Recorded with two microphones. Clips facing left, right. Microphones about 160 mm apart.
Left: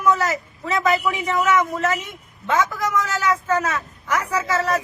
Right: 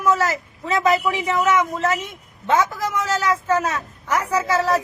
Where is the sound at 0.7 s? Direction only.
30° right (ahead or behind).